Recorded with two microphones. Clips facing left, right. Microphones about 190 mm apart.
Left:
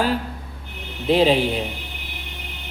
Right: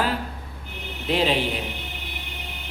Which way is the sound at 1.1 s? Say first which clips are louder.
Left 6 dB; 40° left (ahead or behind).